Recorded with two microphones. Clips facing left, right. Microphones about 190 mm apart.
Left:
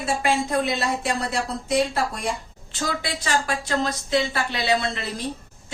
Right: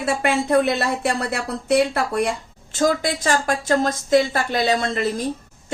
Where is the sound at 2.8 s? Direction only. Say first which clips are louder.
Right 8 dB; 45° right (ahead or behind).